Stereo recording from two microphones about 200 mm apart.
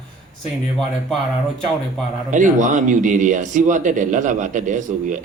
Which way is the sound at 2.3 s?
40° right (ahead or behind).